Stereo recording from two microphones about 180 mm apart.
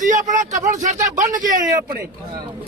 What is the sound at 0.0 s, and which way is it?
A man's voice, 45° right (ahead or behind).